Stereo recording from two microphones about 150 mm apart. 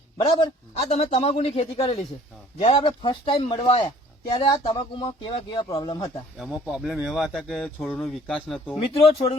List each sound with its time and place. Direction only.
0.3 s speech: 40° left (ahead or behind)
6.3 s speech: 5° right (ahead or behind)
8.7 s speech: 40° left (ahead or behind)